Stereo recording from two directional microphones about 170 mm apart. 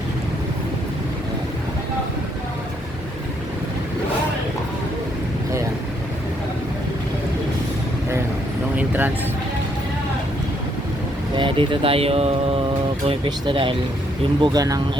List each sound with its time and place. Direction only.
8.8 s vehicle: 10° right (ahead or behind)
11.3 s speech: 30° right (ahead or behind)